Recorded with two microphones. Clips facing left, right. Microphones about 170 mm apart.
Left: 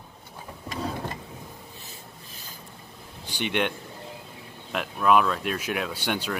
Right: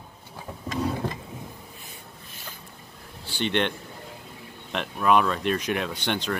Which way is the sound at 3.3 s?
10° left (ahead or behind).